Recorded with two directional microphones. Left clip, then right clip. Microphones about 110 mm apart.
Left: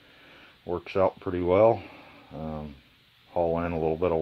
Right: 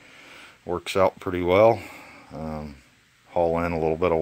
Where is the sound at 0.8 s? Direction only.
20° right (ahead or behind).